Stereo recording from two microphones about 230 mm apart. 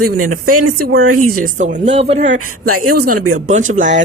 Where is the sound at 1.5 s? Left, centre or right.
Right.